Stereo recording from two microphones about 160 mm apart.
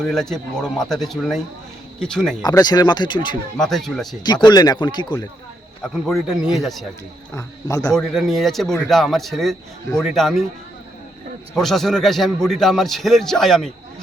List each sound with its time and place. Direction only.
0.0 s a man's voice: centre (ahead or behind)
2.4 s speech: 25° left (ahead or behind)
3.6 s a man's voice: centre (ahead or behind)
4.2 s speech: 25° left (ahead or behind)
5.8 s a man's voice: centre (ahead or behind)
7.3 s speech: 20° left (ahead or behind)
7.9 s a man's voice: centre (ahead or behind)
11.5 s a man's voice: centre (ahead or behind)